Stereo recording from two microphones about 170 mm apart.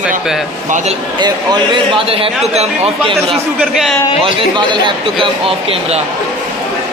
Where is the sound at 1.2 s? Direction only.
25° right (ahead or behind).